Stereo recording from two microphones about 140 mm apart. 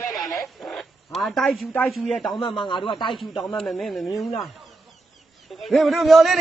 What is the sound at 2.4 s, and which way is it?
A man's voice, 35° left (ahead or behind).